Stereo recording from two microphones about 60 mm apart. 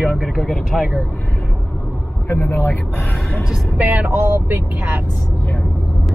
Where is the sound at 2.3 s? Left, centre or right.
Left.